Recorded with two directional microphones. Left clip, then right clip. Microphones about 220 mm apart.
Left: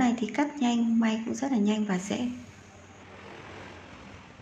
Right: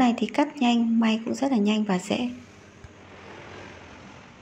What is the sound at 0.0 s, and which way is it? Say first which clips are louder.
Speech: right 4 dB; 25° right (ahead or behind).